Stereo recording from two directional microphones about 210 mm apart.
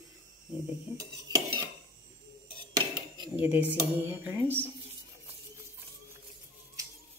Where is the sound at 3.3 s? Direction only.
10° right (ahead or behind).